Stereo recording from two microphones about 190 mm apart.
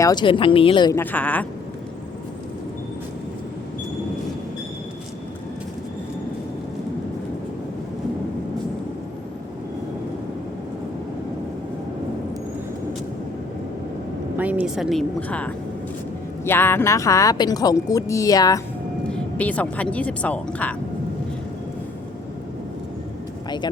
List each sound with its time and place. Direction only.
0.0 s speech: 20° left (ahead or behind)
0.9 s speech: 10° left (ahead or behind)
14.3 s speech: 10° right (ahead or behind); by 18.6 s 20° left (ahead or behind)
19.0 s speech: 5° left (ahead or behind)